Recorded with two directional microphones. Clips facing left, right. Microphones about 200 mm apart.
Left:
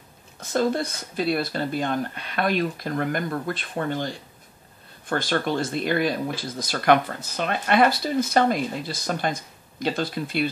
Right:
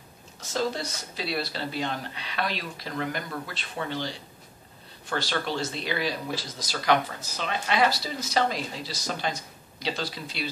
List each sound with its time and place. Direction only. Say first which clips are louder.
0.4 s speech: left 6 dB; 55° left (ahead or behind)